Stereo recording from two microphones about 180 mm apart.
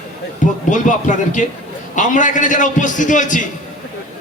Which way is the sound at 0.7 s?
45° left (ahead or behind).